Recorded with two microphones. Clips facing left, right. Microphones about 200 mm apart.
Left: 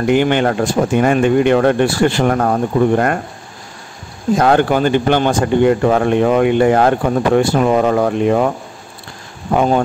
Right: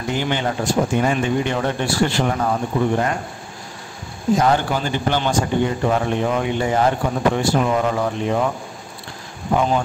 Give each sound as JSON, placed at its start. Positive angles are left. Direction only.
{"t": 0.0, "sound": "speech", "side_deg": 60}
{"t": 4.4, "sound": "speech", "side_deg": 60}
{"t": 9.6, "sound": "speech", "side_deg": 55}